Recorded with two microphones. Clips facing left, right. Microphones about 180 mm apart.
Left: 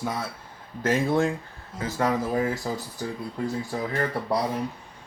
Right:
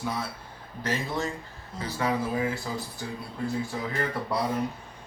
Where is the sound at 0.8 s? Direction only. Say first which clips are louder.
Left 7 dB; 55° left (ahead or behind).